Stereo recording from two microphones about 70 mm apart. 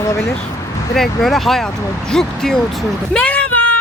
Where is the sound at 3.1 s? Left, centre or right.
Centre.